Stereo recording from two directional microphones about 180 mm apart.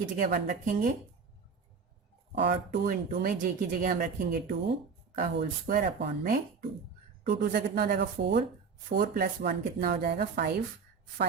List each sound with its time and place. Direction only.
0.2 s speech: 60° right (ahead or behind)
2.3 s speech: 70° right (ahead or behind)
3.2 s speech: 50° right (ahead or behind)